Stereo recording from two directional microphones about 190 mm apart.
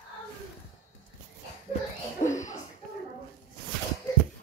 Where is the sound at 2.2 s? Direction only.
40° left (ahead or behind).